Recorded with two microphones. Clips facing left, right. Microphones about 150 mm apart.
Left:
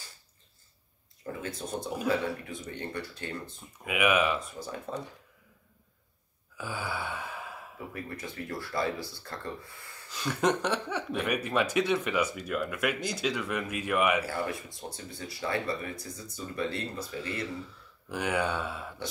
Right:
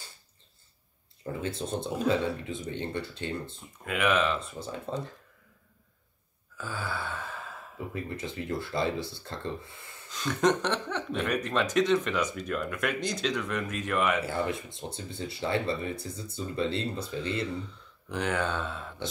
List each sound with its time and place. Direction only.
1.4 s speech: 25° right (ahead or behind)
3.8 s speech: 10° left (ahead or behind)
4.4 s speech: 25° right (ahead or behind)
6.6 s a sound: 15° left (ahead or behind)
7.9 s speech: 25° right (ahead or behind)
10.1 s speech: 5° left (ahead or behind)
14.2 s speech: 25° right (ahead or behind)
18.0 s speech: 10° left (ahead or behind)